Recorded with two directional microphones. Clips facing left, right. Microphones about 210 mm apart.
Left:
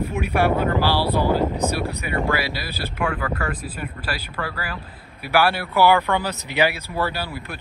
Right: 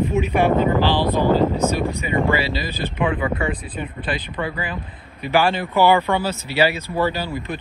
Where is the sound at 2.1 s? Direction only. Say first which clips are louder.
Right 4 dB; 15° right (ahead or behind).